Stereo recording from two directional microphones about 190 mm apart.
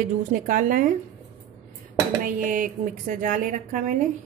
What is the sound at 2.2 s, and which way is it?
Speech, 45° right (ahead or behind).